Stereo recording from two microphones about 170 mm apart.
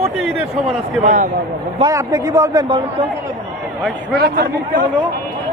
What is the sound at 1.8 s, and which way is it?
Speech, 20° right (ahead or behind).